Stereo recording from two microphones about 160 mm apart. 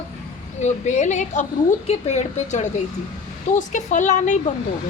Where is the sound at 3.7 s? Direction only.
50° left (ahead or behind).